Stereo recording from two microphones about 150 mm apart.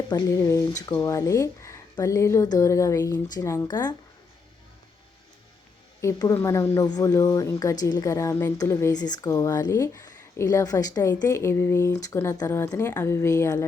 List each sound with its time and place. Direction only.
0.3 s speech: 20° left (ahead or behind)
6.0 s speech: 20° left (ahead or behind)